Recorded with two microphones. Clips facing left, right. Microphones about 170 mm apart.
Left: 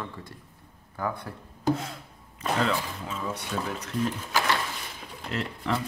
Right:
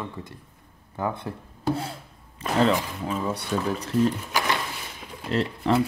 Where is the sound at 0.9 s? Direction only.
25° right (ahead or behind).